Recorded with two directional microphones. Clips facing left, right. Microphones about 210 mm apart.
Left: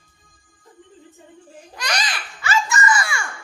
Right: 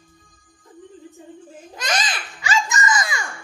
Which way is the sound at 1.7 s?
20° right (ahead or behind).